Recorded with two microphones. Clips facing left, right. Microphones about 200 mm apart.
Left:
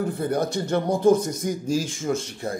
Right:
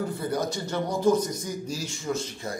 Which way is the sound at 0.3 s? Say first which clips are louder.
Left 7 dB; 55° left (ahead or behind).